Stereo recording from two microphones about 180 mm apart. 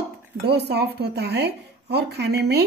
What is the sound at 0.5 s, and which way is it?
A woman's voice, 65° right (ahead or behind).